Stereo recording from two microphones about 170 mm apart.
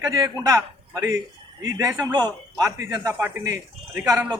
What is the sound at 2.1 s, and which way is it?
A man's voice, 25° right (ahead or behind).